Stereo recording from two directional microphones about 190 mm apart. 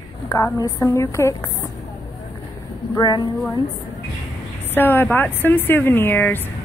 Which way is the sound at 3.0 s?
20° left (ahead or behind).